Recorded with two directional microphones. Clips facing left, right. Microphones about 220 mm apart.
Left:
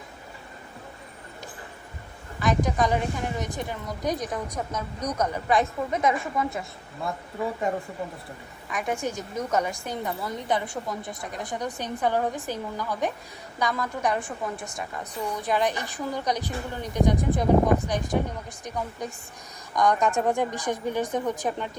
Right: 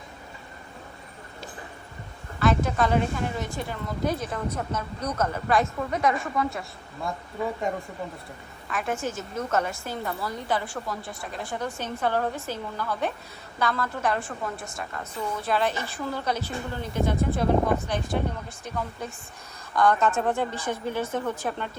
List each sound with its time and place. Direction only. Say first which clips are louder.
2.4 s a woman's voice: right 1 dB; 15° left (ahead or behind)
7.7 s speech: left 4 dB; centre (ahead or behind)
8.7 s a woman's voice: left 1 dB; 15° left (ahead or behind)